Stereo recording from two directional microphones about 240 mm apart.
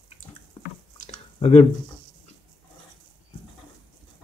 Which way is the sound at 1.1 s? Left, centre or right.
Left.